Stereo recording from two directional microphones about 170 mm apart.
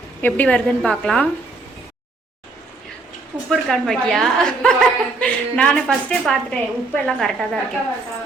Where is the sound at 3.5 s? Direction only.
Centre (ahead or behind).